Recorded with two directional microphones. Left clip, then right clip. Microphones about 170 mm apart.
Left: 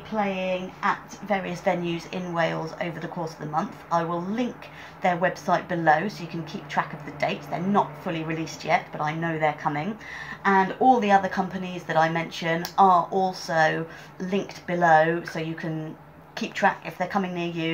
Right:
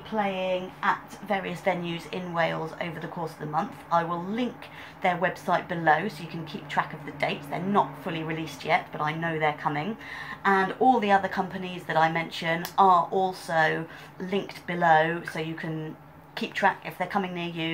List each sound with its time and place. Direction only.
0.1 s a woman's voice: 5° left (ahead or behind)